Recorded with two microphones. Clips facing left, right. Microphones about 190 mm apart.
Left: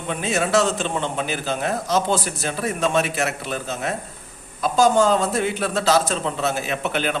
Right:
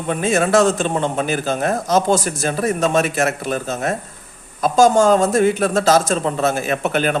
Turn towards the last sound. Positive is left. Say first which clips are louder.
# right 5 dB
turn(degrees=-45)  # may be behind; listen again after turning